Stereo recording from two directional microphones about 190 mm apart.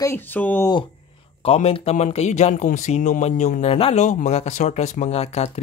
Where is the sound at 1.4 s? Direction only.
30° left (ahead or behind).